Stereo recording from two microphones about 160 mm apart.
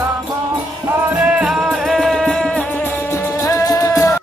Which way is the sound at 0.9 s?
5° right (ahead or behind).